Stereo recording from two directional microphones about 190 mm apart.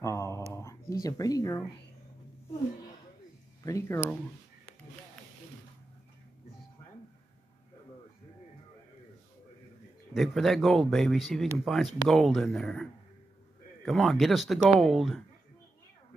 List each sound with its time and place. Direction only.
0.0 s a sound: 15° left (ahead or behind)
1.0 s speech: 20° left (ahead or behind)
3.6 s speech: 15° left (ahead or behind)
10.1 s a man's voice: centre (ahead or behind)
13.8 s a man's voice: centre (ahead or behind)